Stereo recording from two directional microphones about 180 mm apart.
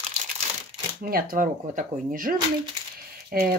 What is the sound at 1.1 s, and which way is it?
Speech, 50° right (ahead or behind).